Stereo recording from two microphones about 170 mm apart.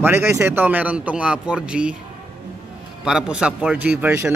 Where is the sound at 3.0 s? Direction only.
5° right (ahead or behind).